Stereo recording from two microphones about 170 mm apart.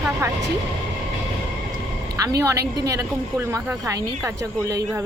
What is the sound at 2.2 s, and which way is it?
Speech, 20° right (ahead or behind).